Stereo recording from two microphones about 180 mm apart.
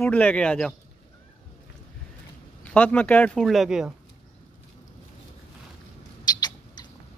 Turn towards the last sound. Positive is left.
turn(degrees=20)  # may be behind; listen again after turning